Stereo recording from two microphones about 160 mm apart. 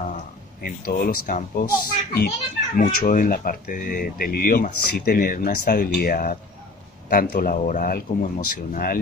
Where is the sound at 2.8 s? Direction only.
55° left (ahead or behind).